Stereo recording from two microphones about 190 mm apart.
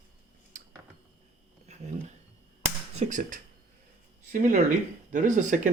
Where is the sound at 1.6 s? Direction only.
35° right (ahead or behind).